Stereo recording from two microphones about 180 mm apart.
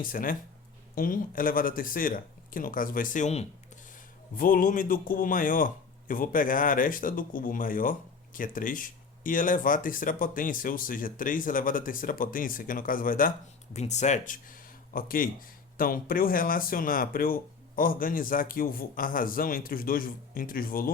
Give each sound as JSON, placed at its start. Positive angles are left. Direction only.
{"t": 0.0, "sound": "a man's voice", "side_deg": 50}
{"t": 13.7, "sound": "a man's voice", "side_deg": 40}